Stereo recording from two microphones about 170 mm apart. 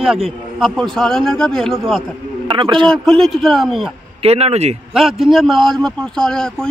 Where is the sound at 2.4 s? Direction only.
30° right (ahead or behind).